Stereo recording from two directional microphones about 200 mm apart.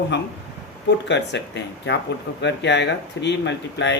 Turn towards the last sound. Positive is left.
turn(degrees=60)  # may be behind; listen again after turning